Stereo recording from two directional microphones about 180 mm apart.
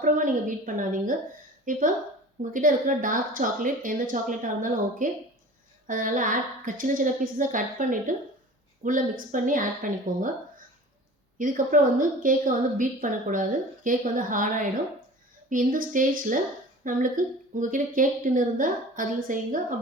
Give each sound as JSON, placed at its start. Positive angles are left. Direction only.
{"t": 0.0, "sound": "a woman's voice", "side_deg": -45}